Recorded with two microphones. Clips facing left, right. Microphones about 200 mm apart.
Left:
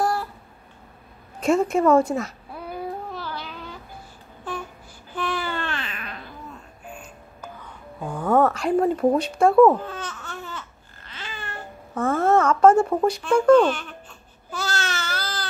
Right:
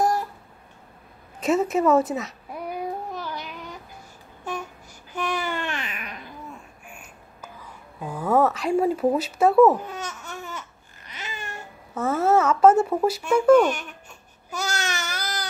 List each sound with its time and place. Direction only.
0.0 s a sound: 20° right (ahead or behind)
1.4 s a woman's voice: 5° right (ahead or behind)
2.5 s a sound: 15° right (ahead or behind)
5.1 s babbling: 15° right (ahead or behind)
8.0 s speech: 5° right (ahead or behind)
11.3 s babbling: 10° right (ahead or behind)